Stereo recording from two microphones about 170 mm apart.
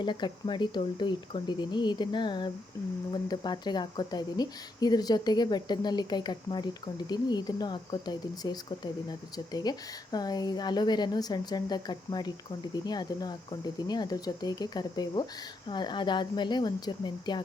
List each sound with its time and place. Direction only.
0.0 s speech: 25° left (ahead or behind)